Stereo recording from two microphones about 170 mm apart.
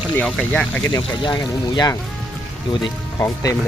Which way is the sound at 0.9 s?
25° left (ahead or behind).